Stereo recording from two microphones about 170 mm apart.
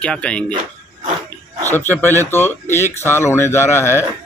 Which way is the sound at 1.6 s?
10° left (ahead or behind).